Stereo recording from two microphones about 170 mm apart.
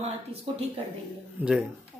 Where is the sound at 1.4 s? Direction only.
10° right (ahead or behind).